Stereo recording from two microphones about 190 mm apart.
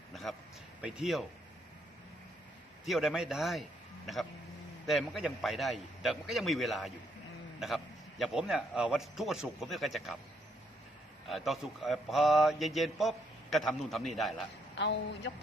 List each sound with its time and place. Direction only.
0.1 s a sound: centre (ahead or behind)
0.8 s a man's voice: 5° right (ahead or behind)
2.8 s a man's voice: centre (ahead or behind)
11.3 s a man's voice: centre (ahead or behind)
14.8 s speech: 65° left (ahead or behind)